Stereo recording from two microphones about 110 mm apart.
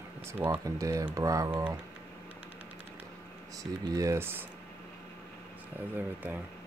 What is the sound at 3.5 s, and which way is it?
Speech, 30° right (ahead or behind).